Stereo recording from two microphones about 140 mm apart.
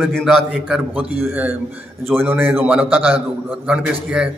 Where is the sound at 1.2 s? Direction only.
15° right (ahead or behind).